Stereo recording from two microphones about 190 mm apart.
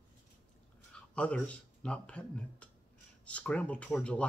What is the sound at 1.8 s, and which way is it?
Speech, 5° left (ahead or behind).